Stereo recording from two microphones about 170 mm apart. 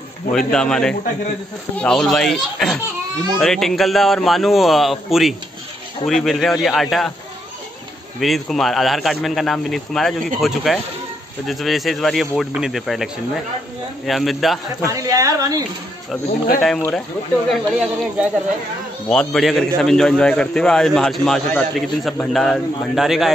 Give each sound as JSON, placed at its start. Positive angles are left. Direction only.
{"t": 0.3, "sound": "a man's voice", "side_deg": 5}
{"t": 8.2, "sound": "a man's voice", "side_deg": 0}
{"t": 14.9, "sound": "a woman's voice", "side_deg": -20}
{"t": 17.5, "sound": "a man's voice", "side_deg": -5}